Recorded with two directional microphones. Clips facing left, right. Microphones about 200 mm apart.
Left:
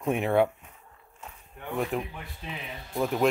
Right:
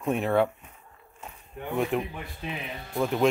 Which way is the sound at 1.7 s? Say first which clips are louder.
Right 3 dB; centre (ahead or behind).